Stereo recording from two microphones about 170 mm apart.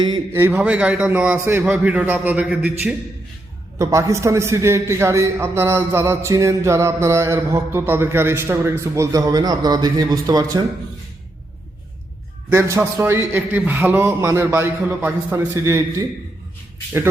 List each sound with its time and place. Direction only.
0.1 s a man's voice: 15° right (ahead or behind)
3.8 s a man's voice: 15° right (ahead or behind)
12.5 s a man's voice: 15° right (ahead or behind)